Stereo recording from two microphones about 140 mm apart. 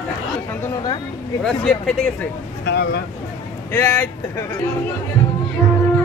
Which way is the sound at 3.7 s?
15° left (ahead or behind).